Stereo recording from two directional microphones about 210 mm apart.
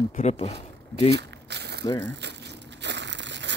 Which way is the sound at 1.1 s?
50° right (ahead or behind).